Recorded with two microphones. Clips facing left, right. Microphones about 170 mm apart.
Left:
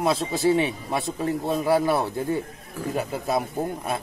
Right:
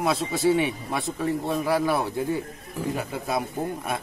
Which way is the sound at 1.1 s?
25° left (ahead or behind).